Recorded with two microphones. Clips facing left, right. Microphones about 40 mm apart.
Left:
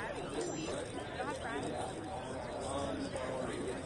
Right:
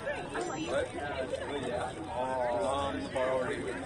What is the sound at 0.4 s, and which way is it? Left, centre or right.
Chatter, right.